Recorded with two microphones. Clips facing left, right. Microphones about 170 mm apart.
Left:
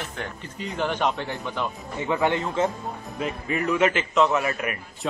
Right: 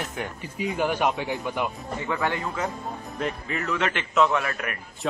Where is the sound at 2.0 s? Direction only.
20° left (ahead or behind).